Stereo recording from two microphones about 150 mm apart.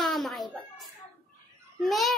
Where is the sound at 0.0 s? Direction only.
Centre (ahead or behind).